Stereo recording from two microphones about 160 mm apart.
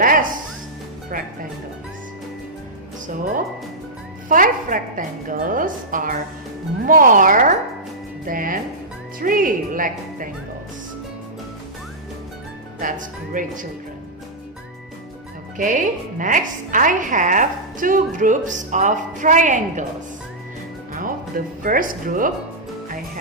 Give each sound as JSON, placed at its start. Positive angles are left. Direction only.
{"t": 0.0, "sound": "music", "side_deg": -60}
{"t": 1.1, "sound": "a woman's voice", "side_deg": -60}
{"t": 4.3, "sound": "a woman's voice", "side_deg": -60}
{"t": 12.8, "sound": "a woman's voice", "side_deg": -55}
{"t": 15.5, "sound": "speech", "side_deg": -55}
{"t": 20.9, "sound": "speech", "side_deg": -60}